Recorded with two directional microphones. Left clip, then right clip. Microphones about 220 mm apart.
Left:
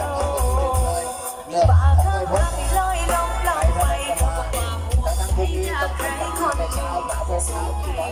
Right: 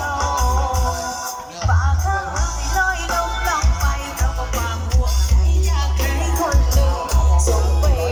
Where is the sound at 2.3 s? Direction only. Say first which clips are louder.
Left 2 dB; 15° left (ahead or behind).